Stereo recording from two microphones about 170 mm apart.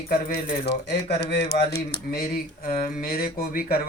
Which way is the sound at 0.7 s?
75° left (ahead or behind).